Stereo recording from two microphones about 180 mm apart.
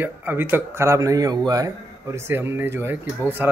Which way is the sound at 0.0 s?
10° right (ahead or behind).